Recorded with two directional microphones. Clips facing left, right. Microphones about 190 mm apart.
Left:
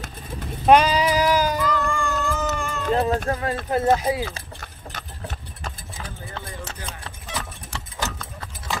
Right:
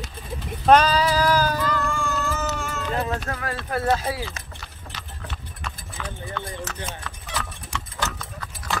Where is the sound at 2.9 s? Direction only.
35° left (ahead or behind); by 4.3 s 20° left (ahead or behind).